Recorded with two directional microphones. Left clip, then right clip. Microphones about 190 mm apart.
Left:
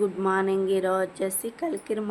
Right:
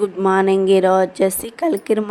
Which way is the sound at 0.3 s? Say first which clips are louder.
Right 12 dB; 40° right (ahead or behind).